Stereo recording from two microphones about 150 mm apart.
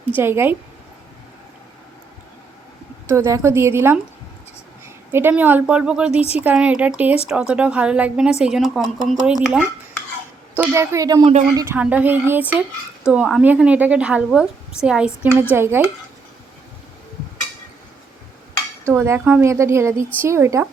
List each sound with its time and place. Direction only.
0.2 s speech: 15° right (ahead or behind)
3.1 s speech: 20° right (ahead or behind)
5.1 s a woman's voice: 15° right (ahead or behind)
18.9 s speech: 15° right (ahead or behind)